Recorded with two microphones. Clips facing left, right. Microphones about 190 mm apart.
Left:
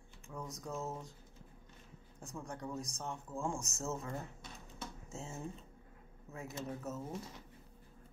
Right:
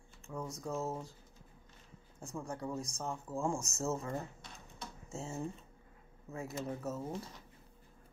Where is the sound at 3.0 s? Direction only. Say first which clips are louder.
Right 3 dB; 35° right (ahead or behind).